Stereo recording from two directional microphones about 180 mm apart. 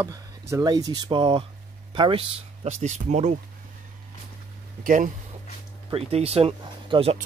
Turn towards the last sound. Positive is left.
turn(degrees=-30)  # may be behind; listen again after turning